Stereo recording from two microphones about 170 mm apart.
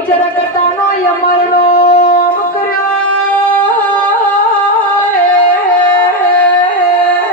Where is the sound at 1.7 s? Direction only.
55° left (ahead or behind).